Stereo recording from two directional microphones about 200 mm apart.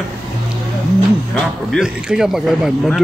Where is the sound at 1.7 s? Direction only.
5° right (ahead or behind).